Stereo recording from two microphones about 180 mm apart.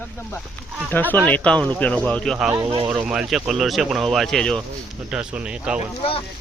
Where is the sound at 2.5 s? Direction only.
25° right (ahead or behind).